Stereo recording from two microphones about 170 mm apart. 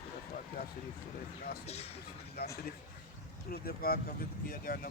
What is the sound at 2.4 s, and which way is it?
Speech, 65° left (ahead or behind).